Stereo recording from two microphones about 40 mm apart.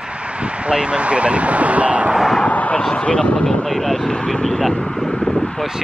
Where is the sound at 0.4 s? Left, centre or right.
Right.